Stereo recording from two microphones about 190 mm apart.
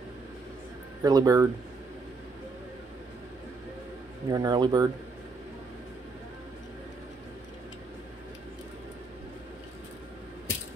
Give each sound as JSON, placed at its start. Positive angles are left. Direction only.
{"t": 1.0, "sound": "speech", "side_deg": -20}
{"t": 4.3, "sound": "speech", "side_deg": -20}